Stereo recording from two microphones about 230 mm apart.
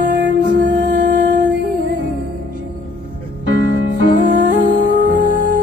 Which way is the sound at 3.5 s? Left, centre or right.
Right.